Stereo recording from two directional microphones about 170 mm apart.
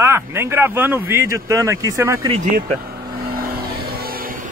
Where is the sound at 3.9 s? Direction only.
60° right (ahead or behind).